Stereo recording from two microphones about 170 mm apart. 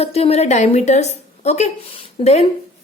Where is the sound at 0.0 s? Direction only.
35° left (ahead or behind).